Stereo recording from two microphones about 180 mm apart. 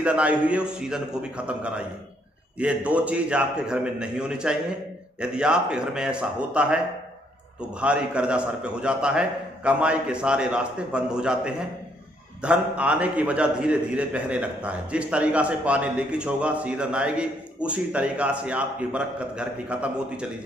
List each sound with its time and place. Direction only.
0.0 s a man's voice: 5° right (ahead or behind)
7.8 s a man's voice: 5° right (ahead or behind)